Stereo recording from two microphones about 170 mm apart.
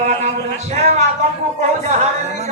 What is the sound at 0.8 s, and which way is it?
Speech, 40° right (ahead or behind).